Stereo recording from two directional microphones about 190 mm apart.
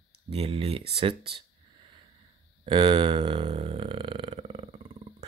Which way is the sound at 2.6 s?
25° right (ahead or behind).